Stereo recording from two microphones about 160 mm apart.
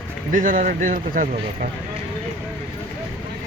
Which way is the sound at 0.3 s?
55° right (ahead or behind).